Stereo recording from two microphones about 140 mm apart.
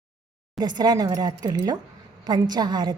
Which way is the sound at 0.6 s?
30° right (ahead or behind).